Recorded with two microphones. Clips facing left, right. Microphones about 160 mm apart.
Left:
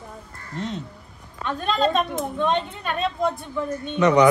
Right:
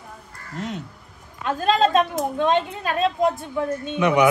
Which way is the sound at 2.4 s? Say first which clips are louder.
Right 3 dB; centre (ahead or behind).